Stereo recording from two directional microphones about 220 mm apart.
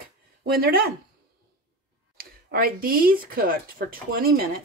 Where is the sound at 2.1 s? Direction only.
40° right (ahead or behind).